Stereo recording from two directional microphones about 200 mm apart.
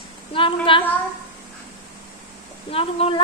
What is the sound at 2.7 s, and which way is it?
Speech, 30° left (ahead or behind).